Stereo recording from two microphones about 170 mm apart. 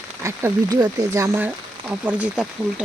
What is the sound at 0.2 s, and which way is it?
Speech, 15° right (ahead or behind).